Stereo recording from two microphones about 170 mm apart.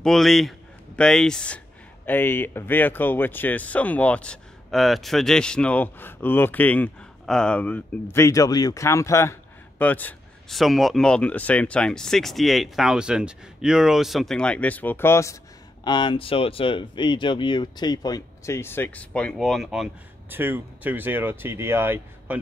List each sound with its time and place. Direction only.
0.0 s speech: centre (ahead or behind)
15.8 s speech: 25° left (ahead or behind); by 19.9 s centre (ahead or behind)
20.2 s speech: 10° right (ahead or behind)